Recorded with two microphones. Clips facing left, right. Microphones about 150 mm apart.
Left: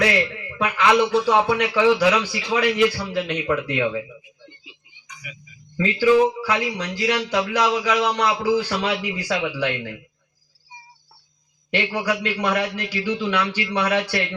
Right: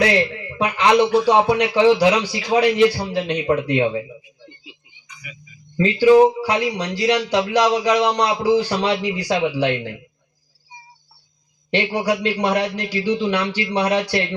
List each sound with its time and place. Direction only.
0.0 s a man's voice: 30° right (ahead or behind)
5.7 s a man's voice: 35° right (ahead or behind)
7.9 s speech: 20° right (ahead or behind)
8.1 s a man's voice: 35° right (ahead or behind)
8.4 s speech: 20° right (ahead or behind)
8.6 s a man's voice: 35° right (ahead or behind)
11.9 s a man's voice: 35° right (ahead or behind)